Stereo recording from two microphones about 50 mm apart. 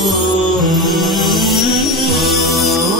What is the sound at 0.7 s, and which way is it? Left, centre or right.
Music, centre.